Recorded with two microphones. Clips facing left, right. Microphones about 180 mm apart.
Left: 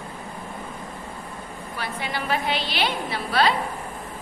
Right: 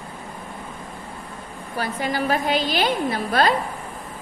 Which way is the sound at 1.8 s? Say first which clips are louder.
Right 6 dB; 40° right (ahead or behind).